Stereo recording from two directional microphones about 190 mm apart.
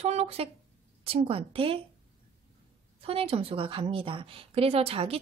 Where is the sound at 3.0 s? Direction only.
30° right (ahead or behind).